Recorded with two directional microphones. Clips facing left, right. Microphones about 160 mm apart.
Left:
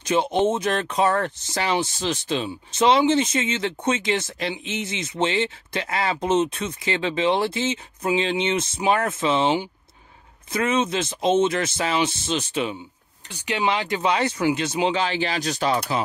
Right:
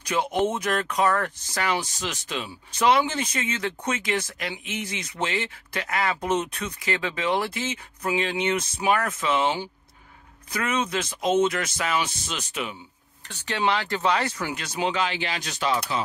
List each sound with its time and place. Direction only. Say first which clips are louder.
0.0 s speech: left 4 dB; 25° left (ahead or behind)
13.3 s speech: left 1 dB; 15° left (ahead or behind); by 16.0 s 35° left (ahead or behind)